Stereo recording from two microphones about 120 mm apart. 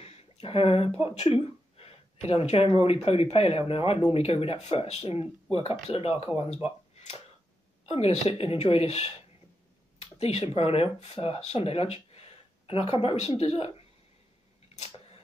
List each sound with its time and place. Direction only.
0.0 s a sound: 55° left (ahead or behind)
1.1 s speech: 55° left (ahead or behind)
7.9 s speech: 65° left (ahead or behind)
10.1 s speech: 55° left (ahead or behind)